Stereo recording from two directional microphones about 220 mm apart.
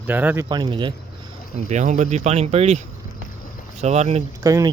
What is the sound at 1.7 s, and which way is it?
Speech, 35° right (ahead or behind).